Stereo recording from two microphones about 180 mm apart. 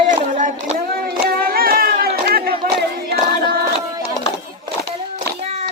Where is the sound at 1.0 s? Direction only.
55° right (ahead or behind).